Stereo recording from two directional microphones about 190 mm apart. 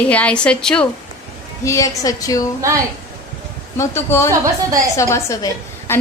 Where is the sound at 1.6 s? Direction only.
15° left (ahead or behind).